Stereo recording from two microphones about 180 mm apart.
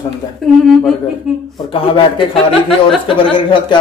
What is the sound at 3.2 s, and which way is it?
Speech, 30° left (ahead or behind).